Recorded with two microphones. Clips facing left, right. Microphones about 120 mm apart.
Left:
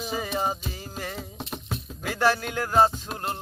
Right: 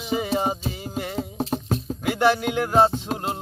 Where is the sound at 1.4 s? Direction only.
35° right (ahead or behind).